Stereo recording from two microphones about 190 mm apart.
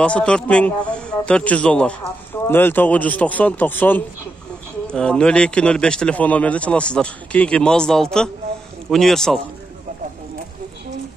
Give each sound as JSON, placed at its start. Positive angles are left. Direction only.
{"t": 0.0, "sound": "a man's voice", "side_deg": 5}